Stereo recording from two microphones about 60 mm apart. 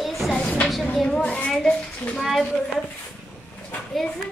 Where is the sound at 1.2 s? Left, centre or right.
Left.